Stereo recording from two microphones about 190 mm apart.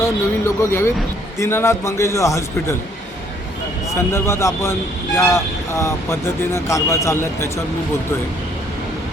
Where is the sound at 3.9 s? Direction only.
15° left (ahead or behind).